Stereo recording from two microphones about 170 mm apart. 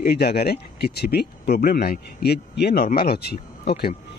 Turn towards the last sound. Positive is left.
turn(degrees=70)  # may be behind; listen again after turning